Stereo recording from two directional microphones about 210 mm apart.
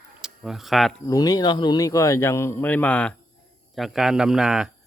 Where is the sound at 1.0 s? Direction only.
15° left (ahead or behind).